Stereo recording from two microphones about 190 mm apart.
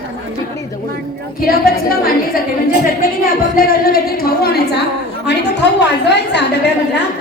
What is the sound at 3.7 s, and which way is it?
A woman's voice, 50° left (ahead or behind).